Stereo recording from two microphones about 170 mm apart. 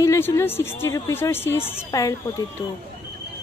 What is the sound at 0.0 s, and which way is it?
A woman's voice, 20° left (ahead or behind).